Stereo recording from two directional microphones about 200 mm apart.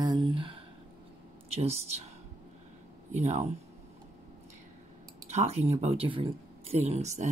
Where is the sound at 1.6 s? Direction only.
30° right (ahead or behind).